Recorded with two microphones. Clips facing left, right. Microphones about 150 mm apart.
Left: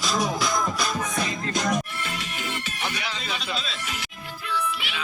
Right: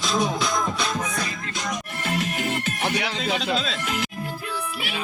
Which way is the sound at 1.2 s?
25° left (ahead or behind).